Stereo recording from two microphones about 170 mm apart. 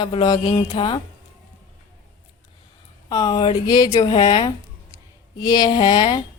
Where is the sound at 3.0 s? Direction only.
25° left (ahead or behind).